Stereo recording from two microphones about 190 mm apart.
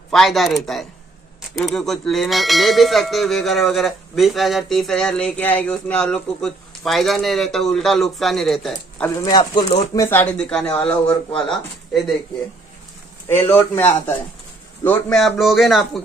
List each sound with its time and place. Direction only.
0.1 s bell: centre (ahead or behind)
9.1 s speech: 20° left (ahead or behind)
9.4 s speech: 40° left (ahead or behind)
9.8 s bell: 15° left (ahead or behind)
13.5 s a man's voice: 10° left (ahead or behind)
14.8 s bell: 5° left (ahead or behind)